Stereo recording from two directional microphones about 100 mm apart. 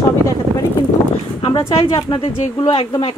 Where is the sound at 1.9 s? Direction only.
45° left (ahead or behind).